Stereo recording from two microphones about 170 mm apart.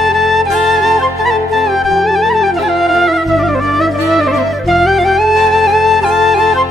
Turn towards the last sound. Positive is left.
turn(degrees=0)  # may be behind; listen again after turning